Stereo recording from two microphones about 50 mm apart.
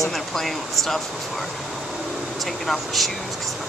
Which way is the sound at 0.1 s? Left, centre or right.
Centre.